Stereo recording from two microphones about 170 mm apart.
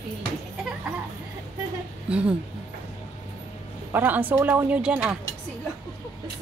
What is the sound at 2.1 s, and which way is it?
Speech, 5° right (ahead or behind).